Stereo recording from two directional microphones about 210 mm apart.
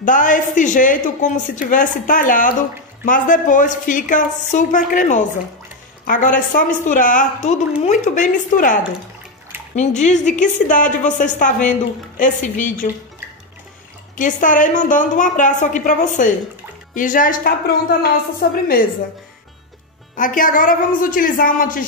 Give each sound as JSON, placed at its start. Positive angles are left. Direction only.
{"t": 0.0, "sound": "a woman's voice", "side_deg": 40}
{"t": 9.8, "sound": "a woman's voice", "side_deg": 35}
{"t": 14.1, "sound": "a woman's voice", "side_deg": 40}
{"t": 20.2, "sound": "a woman's voice", "side_deg": 40}